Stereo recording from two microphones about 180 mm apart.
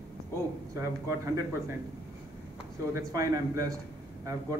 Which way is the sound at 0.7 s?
15° right (ahead or behind).